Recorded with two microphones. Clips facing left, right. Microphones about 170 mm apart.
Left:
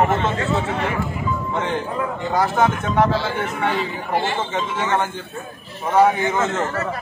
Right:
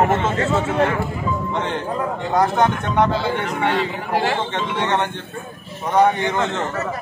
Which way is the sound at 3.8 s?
90° right.